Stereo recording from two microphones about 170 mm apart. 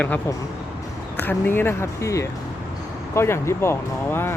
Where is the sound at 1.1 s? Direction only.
10° left (ahead or behind).